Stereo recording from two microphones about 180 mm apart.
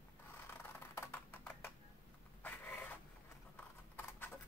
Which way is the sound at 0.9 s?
10° left (ahead or behind).